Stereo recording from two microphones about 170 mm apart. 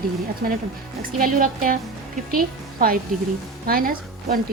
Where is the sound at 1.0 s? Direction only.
55° right (ahead or behind).